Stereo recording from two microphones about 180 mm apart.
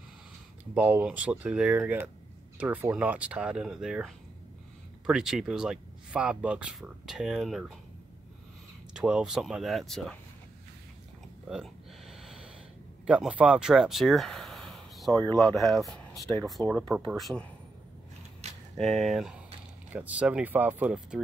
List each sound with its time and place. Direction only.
0.7 s speech: 10° right (ahead or behind)
8.9 s speech: 5° right (ahead or behind)
11.4 s a sound: centre (ahead or behind)
13.0 s speech: 5° right (ahead or behind)
18.4 s a sound: 35° right (ahead or behind)
18.8 s speech: centre (ahead or behind)